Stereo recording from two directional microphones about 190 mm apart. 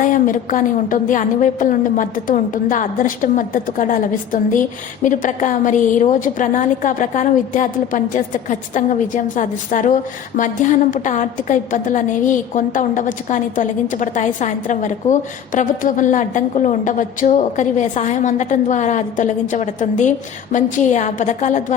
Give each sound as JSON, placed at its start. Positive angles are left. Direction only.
{"t": 0.0, "sound": "a woman's voice", "side_deg": 45}